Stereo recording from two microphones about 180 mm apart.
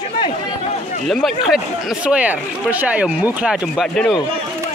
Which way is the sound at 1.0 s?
Centre (ahead or behind).